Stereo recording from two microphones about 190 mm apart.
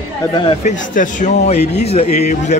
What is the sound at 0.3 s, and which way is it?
Speech, 25° left (ahead or behind).